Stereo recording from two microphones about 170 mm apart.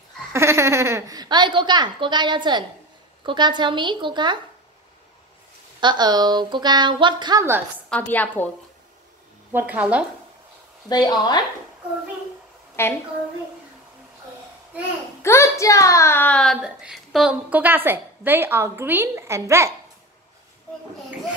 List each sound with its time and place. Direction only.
0.3 s speech: 15° right (ahead or behind)
5.8 s speech: 25° right (ahead or behind)
7.9 s a woman's voice: 10° left (ahead or behind)
9.5 s a child's voice: 10° right (ahead or behind)
10.9 s speech: 25° left (ahead or behind)
12.8 s a woman's voice: 15° left (ahead or behind)
15.2 s a child's voice: 15° left (ahead or behind); by 19.7 s 15° right (ahead or behind)